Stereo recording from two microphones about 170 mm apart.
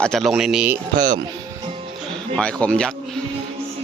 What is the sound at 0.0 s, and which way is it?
Speech, centre (ahead or behind).